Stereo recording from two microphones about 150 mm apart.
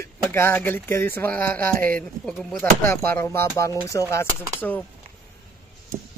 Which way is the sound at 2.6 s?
15° left (ahead or behind).